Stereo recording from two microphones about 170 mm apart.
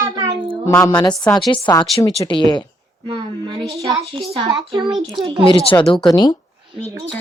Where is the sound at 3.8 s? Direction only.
20° right (ahead or behind).